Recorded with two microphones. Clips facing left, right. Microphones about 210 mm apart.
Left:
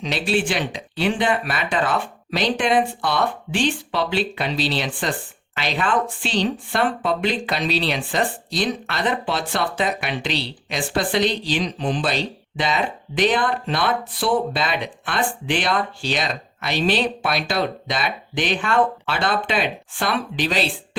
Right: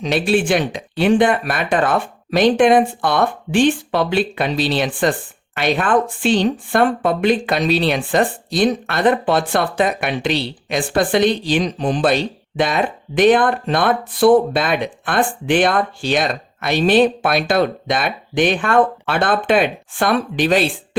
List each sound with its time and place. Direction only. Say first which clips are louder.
0.0 s speech: right 5 dB; 50° right (ahead or behind)